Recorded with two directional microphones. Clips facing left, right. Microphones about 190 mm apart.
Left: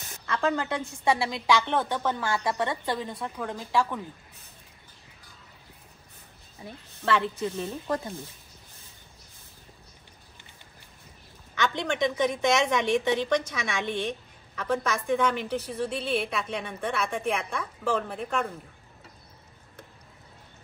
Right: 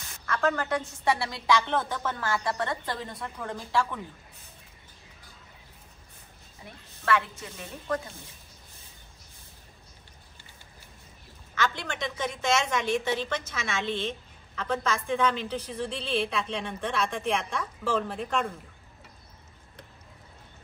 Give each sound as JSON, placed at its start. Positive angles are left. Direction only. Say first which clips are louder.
{"t": 0.3, "sound": "a woman's voice", "louder": "even", "side_deg": 15}
{"t": 6.6, "sound": "speech", "louder": "left 4 dB", "side_deg": 30}
{"t": 11.5, "sound": "a woman's voice", "louder": "left 3 dB", "side_deg": 20}